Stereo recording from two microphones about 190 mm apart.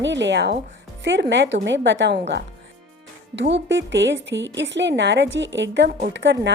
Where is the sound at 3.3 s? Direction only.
70° right (ahead or behind).